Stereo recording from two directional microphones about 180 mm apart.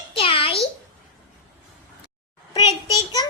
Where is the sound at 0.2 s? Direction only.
30° left (ahead or behind).